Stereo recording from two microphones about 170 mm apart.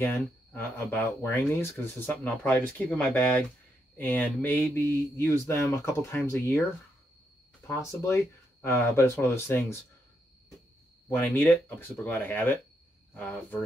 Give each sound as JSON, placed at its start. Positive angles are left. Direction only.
{"t": 0.0, "sound": "speech", "side_deg": 15}
{"t": 7.6, "sound": "speech", "side_deg": 15}
{"t": 11.1, "sound": "speech", "side_deg": 15}